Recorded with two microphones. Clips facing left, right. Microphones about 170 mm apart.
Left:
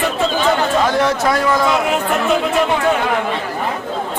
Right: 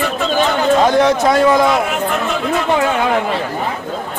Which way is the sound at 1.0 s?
20° right (ahead or behind).